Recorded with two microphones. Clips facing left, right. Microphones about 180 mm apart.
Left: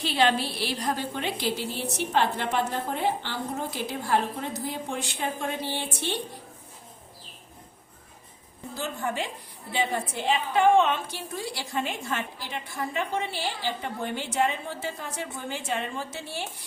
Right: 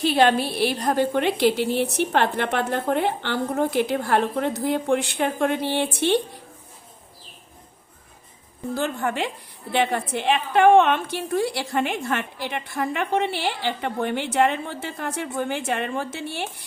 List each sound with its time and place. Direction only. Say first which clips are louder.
0.0 s a woman's voice: right 6 dB; 55° right (ahead or behind)
8.7 s a woman's voice: right 6 dB; 65° right (ahead or behind)